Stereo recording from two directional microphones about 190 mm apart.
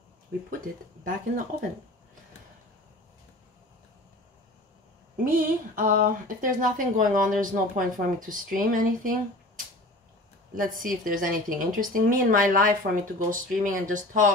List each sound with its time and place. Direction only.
1.0 s speech: 45° right (ahead or behind)
5.2 s speech: 45° right (ahead or behind)
10.5 s speech: 45° right (ahead or behind)